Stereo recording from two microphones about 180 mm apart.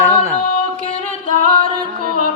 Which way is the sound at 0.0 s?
15° right (ahead or behind).